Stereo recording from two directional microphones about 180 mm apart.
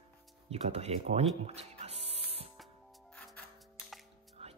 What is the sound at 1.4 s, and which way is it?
Music, 35° right (ahead or behind).